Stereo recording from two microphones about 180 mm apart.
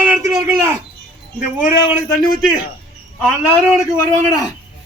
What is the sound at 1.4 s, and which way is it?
Speech, 10° right (ahead or behind).